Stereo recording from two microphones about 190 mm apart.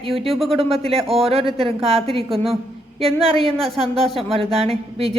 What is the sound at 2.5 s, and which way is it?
Speech, 30° right (ahead or behind).